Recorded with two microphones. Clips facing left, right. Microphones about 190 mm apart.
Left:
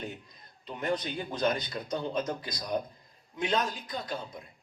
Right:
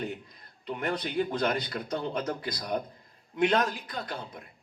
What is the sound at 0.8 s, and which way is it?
A man's voice, 60° right (ahead or behind).